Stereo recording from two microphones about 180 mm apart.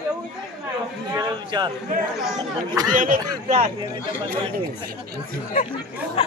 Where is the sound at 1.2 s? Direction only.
25° right (ahead or behind).